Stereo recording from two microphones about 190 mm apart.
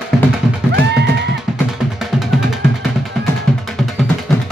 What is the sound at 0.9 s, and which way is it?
Music, 65° right (ahead or behind).